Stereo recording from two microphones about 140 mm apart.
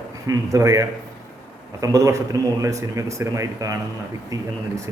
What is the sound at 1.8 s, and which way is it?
A man's voice, 25° right (ahead or behind).